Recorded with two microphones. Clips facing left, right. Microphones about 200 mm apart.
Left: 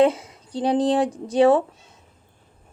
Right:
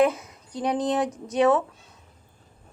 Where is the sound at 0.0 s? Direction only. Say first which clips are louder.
Left 3 dB; 30° left (ahead or behind).